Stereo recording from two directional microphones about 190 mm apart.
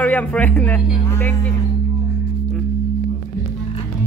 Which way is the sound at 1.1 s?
10° left (ahead or behind).